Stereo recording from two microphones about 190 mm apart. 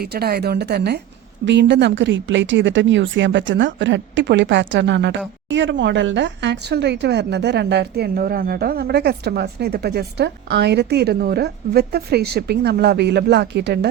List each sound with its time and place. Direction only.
0.0 s a woman's voice: 55° right (ahead or behind)